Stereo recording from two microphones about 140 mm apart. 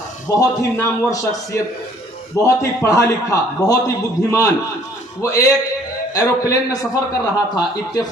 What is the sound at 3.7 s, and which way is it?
Speech, 25° left (ahead or behind).